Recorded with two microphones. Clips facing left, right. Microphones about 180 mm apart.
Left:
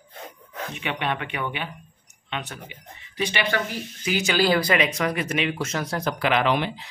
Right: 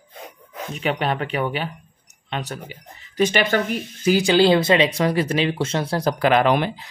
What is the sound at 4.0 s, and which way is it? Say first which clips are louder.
Speech: right 7 dB; 35° right (ahead or behind).